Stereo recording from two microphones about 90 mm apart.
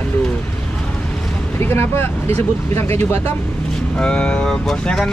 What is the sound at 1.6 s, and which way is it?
Speech, 25° left (ahead or behind).